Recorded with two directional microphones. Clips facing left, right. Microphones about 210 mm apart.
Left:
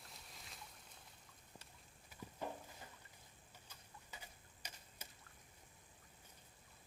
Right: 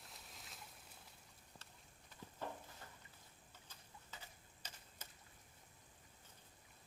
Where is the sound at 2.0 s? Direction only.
15° left (ahead or behind).